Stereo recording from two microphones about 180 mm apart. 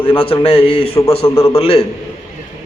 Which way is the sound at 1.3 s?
15° left (ahead or behind).